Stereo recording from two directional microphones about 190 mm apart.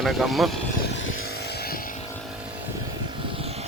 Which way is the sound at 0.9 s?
85° left.